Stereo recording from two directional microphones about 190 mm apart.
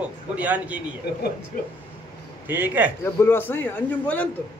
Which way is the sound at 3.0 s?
10° left (ahead or behind).